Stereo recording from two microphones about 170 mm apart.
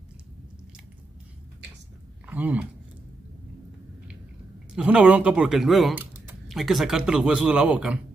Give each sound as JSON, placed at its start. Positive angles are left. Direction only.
{"t": 2.2, "sound": "speech", "side_deg": -10}
{"t": 4.7, "sound": "a man's voice", "side_deg": -5}
{"t": 5.9, "sound": "typing", "side_deg": -10}
{"t": 6.5, "sound": "a man's voice", "side_deg": 0}